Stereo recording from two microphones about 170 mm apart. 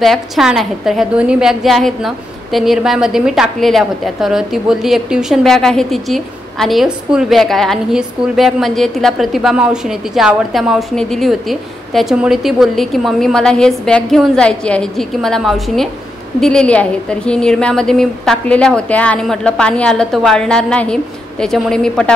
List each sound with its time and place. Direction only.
0.0 s a woman's voice: centre (ahead or behind)